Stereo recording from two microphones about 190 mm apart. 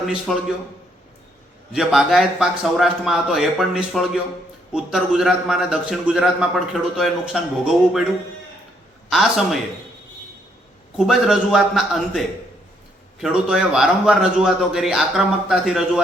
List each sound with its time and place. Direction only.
0.0 s a man's voice: centre (ahead or behind)
1.7 s a man's voice: centre (ahead or behind)
9.0 s a man's voice: centre (ahead or behind)
10.9 s a man's voice: centre (ahead or behind)